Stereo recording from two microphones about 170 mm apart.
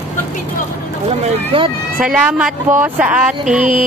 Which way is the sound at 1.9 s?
5° right (ahead or behind).